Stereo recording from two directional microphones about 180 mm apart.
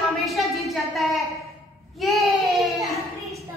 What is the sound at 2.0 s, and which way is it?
Child singing, centre (ahead or behind).